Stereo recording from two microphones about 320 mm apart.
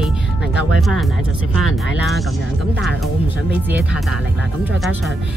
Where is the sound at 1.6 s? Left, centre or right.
Left.